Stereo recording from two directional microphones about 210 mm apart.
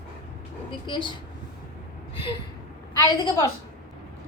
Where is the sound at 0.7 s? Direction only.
25° left (ahead or behind).